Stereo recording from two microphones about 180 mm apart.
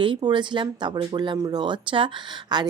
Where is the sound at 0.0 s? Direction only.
25° right (ahead or behind).